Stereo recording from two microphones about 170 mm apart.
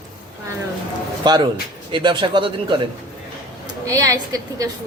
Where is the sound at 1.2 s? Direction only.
25° right (ahead or behind).